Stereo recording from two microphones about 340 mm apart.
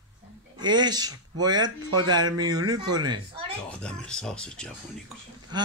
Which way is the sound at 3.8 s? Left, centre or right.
Centre.